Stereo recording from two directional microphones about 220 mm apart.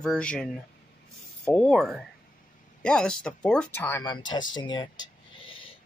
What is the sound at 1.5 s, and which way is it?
Speech, 5° left (ahead or behind).